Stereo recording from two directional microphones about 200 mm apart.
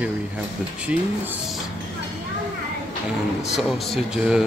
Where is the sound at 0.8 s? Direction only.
5° right (ahead or behind).